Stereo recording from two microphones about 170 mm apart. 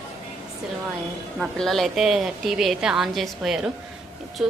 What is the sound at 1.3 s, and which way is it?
A woman's voice, centre (ahead or behind).